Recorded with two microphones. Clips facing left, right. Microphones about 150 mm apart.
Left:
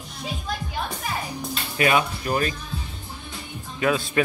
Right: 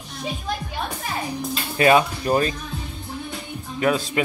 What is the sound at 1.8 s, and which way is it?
Speech, 35° right (ahead or behind).